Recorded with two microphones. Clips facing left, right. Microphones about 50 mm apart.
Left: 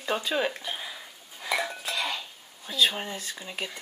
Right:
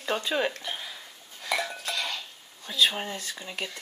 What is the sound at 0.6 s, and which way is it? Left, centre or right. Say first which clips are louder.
Dishes: left 1 dB; centre.